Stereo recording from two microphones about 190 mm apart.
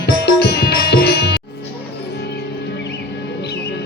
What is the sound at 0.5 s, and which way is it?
Music, 55° left (ahead or behind).